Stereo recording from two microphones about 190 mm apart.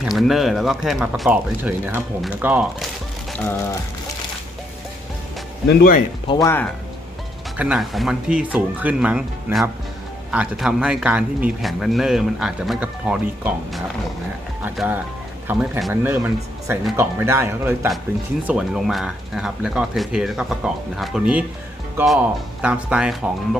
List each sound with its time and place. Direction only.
0.0 s a man's voice: centre (ahead or behind)
3.3 s music: 10° left (ahead or behind)
5.6 s speech: 50° left (ahead or behind)
6.2 s music: 20° left (ahead or behind)
7.5 s a man's voice: 5° right (ahead or behind)